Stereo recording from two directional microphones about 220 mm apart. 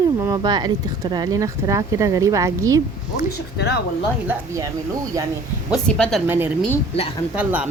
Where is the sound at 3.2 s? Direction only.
45° left (ahead or behind).